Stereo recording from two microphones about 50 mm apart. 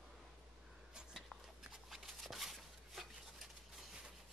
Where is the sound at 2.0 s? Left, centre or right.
Centre.